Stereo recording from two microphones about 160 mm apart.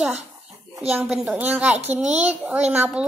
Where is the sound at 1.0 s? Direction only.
5° right (ahead or behind).